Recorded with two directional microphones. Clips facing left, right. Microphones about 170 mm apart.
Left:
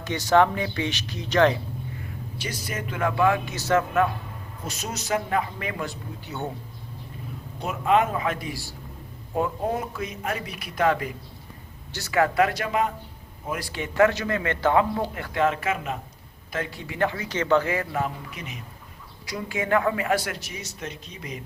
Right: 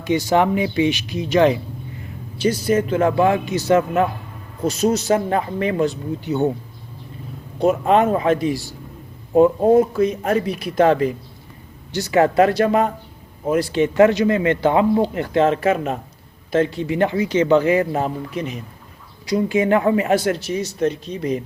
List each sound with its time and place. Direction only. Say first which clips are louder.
0.0 s speech: right 3 dB; 10° right (ahead or behind)
2.4 s speech: right 16 dB; 30° right (ahead or behind)
3.5 s speech: right 6 dB; 15° right (ahead or behind)
4.6 s speech: right 16 dB; 30° right (ahead or behind)
7.6 s speech: right 7 dB; 35° right (ahead or behind)
9.6 s speech: right 14 dB; 35° right (ahead or behind)
11.9 s speech: right 7 dB; 15° right (ahead or behind); by 12.9 s 40° right (ahead or behind)
13.5 s speech: right 13 dB; 25° right (ahead or behind)
16.5 s speech: right 13 dB; 25° right (ahead or behind)
19.3 s speech: right 8 dB; 20° right (ahead or behind)